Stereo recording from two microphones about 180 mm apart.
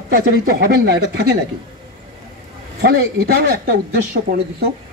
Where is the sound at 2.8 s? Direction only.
60° right (ahead or behind).